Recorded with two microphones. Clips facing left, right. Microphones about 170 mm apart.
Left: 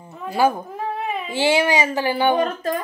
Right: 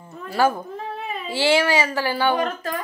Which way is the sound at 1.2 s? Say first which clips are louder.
Even; 15° left (ahead or behind).